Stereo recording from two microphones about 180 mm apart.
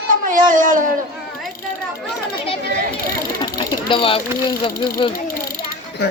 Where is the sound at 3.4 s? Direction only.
30° left (ahead or behind).